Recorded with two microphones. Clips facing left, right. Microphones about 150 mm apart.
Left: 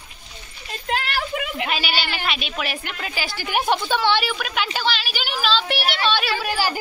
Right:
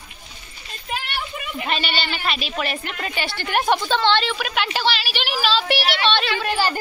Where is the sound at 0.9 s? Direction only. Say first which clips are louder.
Left 4 dB; 90° left.